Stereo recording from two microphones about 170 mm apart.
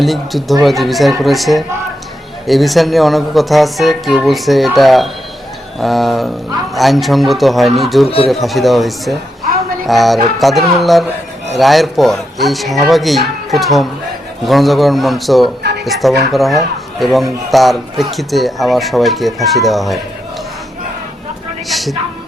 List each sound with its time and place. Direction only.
0.0 s speech: centre (ahead or behind)
8.0 s speech: 35° left (ahead or behind)
8.3 s speech: centre (ahead or behind)
21.7 s speech: centre (ahead or behind)